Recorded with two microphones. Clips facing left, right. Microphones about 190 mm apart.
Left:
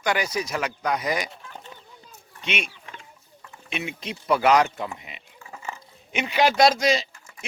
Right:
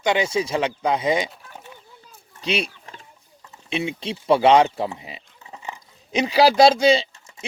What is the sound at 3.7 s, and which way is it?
Speech, 30° right (ahead or behind).